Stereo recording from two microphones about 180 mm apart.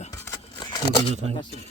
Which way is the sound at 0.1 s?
20° left (ahead or behind).